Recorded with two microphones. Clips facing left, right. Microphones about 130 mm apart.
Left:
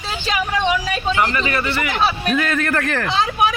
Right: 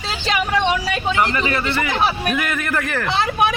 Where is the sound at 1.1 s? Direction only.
20° right (ahead or behind).